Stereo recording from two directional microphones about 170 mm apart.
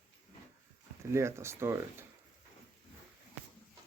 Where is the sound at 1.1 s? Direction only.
15° right (ahead or behind).